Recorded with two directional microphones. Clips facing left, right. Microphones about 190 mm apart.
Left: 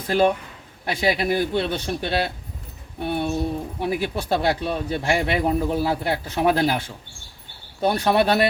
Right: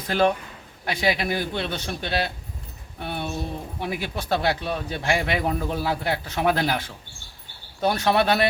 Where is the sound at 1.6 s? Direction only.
10° left (ahead or behind).